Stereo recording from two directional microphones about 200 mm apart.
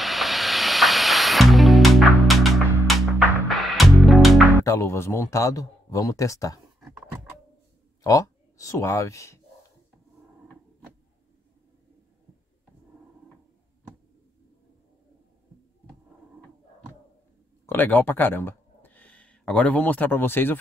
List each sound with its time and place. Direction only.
0.0 s music: centre (ahead or behind)
4.6 s speech: 15° left (ahead or behind)
8.0 s speech: 15° left (ahead or behind)
17.6 s speech: 10° left (ahead or behind)